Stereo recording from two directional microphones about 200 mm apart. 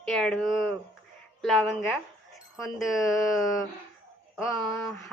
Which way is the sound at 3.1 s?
15° left (ahead or behind).